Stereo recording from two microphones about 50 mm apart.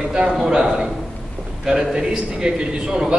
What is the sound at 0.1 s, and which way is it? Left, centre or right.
Speech, centre.